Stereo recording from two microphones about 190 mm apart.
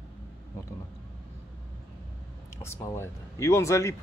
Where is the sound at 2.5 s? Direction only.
15° left (ahead or behind).